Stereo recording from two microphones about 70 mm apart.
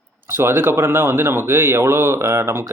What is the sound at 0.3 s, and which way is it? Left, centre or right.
A man's voice, right.